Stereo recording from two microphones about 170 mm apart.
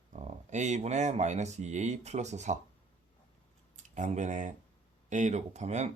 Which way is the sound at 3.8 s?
45° right (ahead or behind).